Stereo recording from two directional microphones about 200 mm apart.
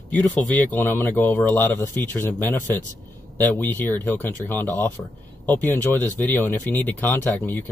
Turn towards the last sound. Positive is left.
turn(degrees=10)  # may be behind; listen again after turning